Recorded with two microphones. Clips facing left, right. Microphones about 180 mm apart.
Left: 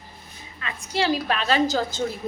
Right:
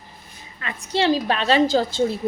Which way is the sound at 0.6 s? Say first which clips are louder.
Right 4 dB; 30° right (ahead or behind).